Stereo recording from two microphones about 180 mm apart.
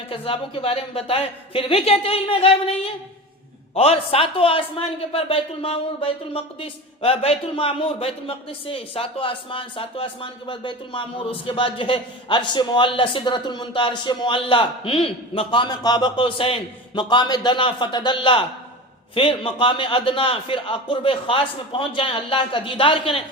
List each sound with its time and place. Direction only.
0.1 s a man's voice: 30° left (ahead or behind)